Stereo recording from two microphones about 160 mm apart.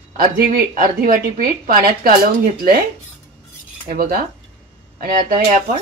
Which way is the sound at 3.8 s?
65° right (ahead or behind).